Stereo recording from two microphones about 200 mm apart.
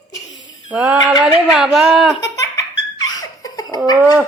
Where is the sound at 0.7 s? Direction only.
5° right (ahead or behind).